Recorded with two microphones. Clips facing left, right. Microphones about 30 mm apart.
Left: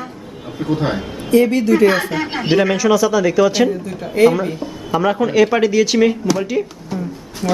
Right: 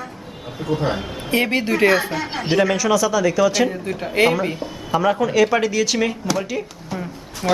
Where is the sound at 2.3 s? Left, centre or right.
Centre.